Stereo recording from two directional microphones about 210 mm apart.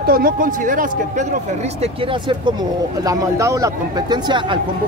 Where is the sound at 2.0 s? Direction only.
20° right (ahead or behind).